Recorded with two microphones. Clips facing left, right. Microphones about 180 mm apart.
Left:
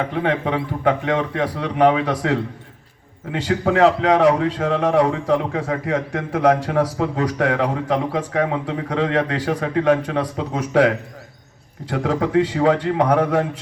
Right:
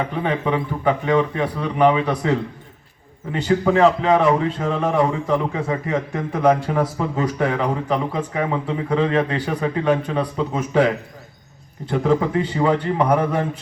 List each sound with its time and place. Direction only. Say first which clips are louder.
0.2 s a man's voice: left 1 dB; 90° left
3.3 s a man's voice: right 1 dB; 90° left